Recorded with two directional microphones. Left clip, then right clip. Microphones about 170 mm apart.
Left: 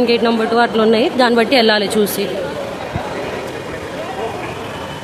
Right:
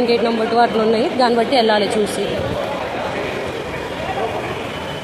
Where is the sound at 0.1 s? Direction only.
30° left (ahead or behind).